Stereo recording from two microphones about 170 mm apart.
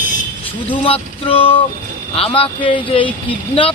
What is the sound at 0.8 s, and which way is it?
Speech, 35° left (ahead or behind).